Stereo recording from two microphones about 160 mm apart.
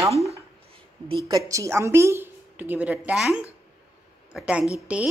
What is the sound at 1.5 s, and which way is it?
A woman's voice, 20° right (ahead or behind).